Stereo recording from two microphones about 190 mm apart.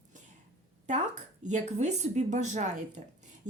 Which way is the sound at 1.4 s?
35° right (ahead or behind).